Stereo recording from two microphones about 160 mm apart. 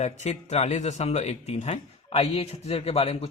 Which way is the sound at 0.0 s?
45° left (ahead or behind).